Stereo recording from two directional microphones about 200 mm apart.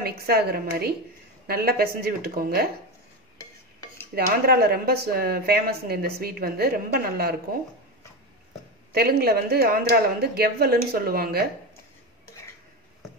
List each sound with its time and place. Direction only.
0.0 s speech: 50° right (ahead or behind)
4.1 s speech: 50° right (ahead or behind)
8.9 s speech: 50° right (ahead or behind)